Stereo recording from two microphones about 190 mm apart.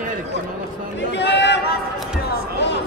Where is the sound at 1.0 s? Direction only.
65° left (ahead or behind).